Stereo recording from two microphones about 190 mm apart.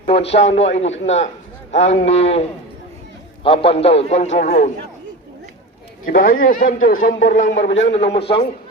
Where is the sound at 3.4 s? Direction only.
30° left (ahead or behind).